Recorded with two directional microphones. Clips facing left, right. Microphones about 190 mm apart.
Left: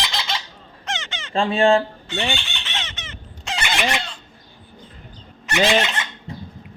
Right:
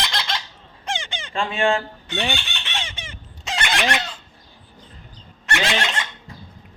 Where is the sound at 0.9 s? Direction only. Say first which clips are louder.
Right 1 dB; 15° right (ahead or behind).